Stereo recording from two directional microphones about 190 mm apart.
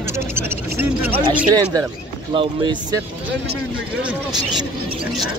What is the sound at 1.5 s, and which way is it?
A man's voice, 20° right (ahead or behind).